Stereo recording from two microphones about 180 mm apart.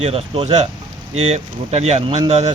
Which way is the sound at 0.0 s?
35° right (ahead or behind).